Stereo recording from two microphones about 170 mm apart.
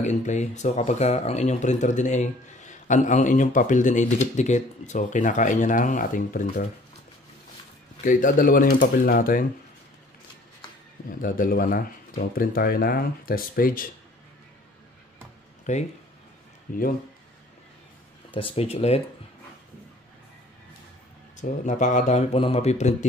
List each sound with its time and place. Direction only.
0.0 s speech: 45° left (ahead or behind)
8.0 s speech: 50° left (ahead or behind)
11.1 s speech: 55° left (ahead or behind)
15.7 s speech: 45° left (ahead or behind)
18.3 s speech: 35° left (ahead or behind)
21.4 s speech: 45° left (ahead or behind)